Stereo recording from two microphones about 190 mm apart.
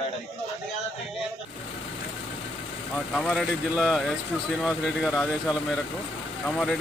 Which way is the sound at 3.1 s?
Centre (ahead or behind).